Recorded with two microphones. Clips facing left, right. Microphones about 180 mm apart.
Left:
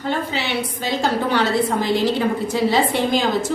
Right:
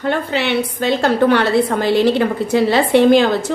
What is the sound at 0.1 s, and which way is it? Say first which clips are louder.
A woman's voice: right 5 dB; 60° right (ahead or behind).